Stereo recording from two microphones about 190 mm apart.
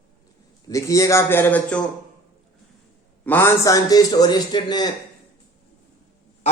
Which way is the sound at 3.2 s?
10° left (ahead or behind).